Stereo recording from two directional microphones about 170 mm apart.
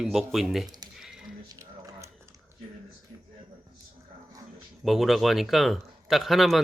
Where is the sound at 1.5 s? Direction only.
20° right (ahead or behind).